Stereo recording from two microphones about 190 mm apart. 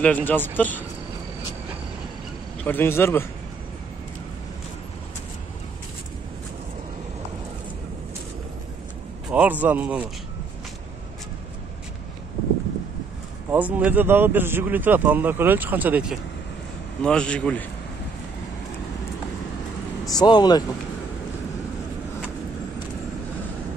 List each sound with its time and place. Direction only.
0.0 s speech: 10° left (ahead or behind)
2.6 s speech: 10° left (ahead or behind)
9.3 s speech: 10° right (ahead or behind)
13.5 s speech: 10° right (ahead or behind)
17.0 s a man's voice: 5° left (ahead or behind)
20.1 s speech: 20° left (ahead or behind)